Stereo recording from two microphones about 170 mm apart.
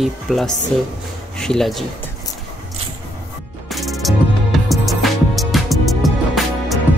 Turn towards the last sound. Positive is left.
turn(degrees=0)  # may be behind; listen again after turning